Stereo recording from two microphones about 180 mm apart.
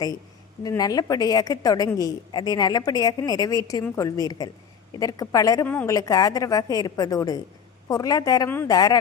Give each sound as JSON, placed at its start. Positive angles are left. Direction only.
{"t": 0.6, "sound": "a woman's voice", "side_deg": 20}